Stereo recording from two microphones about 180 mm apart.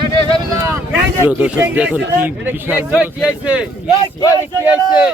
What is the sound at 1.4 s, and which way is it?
Speech, 5° right (ahead or behind).